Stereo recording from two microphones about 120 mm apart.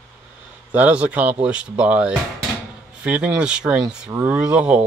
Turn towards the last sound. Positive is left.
turn(degrees=-10)  # may be behind; listen again after turning